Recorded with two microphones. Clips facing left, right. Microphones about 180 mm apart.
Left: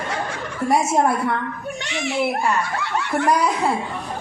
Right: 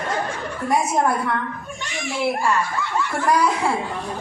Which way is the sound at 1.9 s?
70° left (ahead or behind).